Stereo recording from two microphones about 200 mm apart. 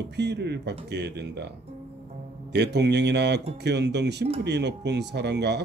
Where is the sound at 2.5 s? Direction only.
60° right (ahead or behind).